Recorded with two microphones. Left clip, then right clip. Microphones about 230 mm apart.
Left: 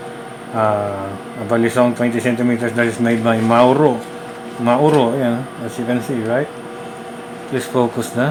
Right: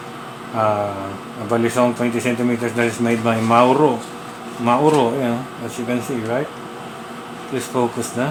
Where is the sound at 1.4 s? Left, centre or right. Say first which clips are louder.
Left 2 dB; centre.